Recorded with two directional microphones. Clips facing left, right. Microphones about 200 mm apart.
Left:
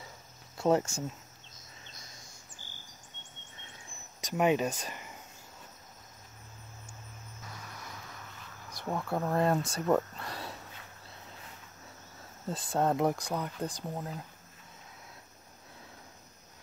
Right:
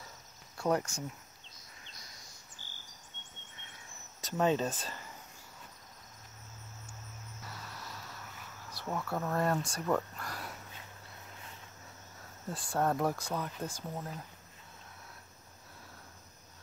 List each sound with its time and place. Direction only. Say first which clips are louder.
0.6 s speech: left 4 dB; 25° left (ahead or behind)
4.2 s speech: left 2 dB; 15° left (ahead or behind)
7.6 s music: even; 15° left (ahead or behind)
8.7 s speech: left 3 dB; 15° left (ahead or behind)
12.4 s speech: left 3 dB; 20° left (ahead or behind)